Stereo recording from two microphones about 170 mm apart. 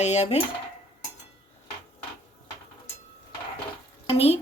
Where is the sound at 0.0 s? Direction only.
40° left (ahead or behind).